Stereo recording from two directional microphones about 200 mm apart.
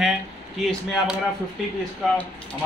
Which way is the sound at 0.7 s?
5° right (ahead or behind).